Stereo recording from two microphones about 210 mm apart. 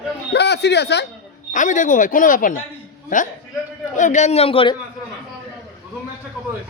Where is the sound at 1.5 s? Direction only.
35° left (ahead or behind).